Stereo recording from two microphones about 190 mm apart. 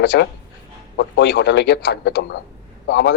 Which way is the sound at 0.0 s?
60° left (ahead or behind).